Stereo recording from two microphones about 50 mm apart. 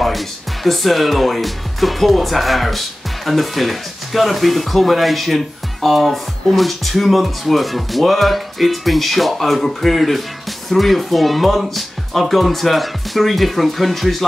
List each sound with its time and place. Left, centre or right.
0.7 s speech: centre